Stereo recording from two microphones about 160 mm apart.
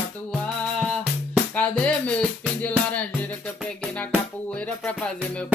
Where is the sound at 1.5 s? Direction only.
10° left (ahead or behind).